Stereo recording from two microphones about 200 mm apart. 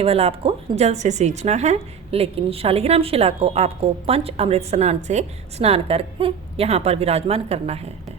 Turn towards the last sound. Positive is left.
turn(degrees=-30)  # may be behind; listen again after turning